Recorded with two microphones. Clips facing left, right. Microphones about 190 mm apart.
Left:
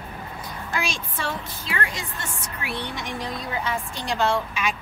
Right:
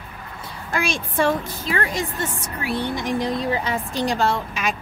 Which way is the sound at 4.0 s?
40° right (ahead or behind).